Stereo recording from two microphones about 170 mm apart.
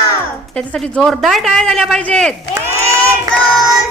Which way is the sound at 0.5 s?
5° left (ahead or behind).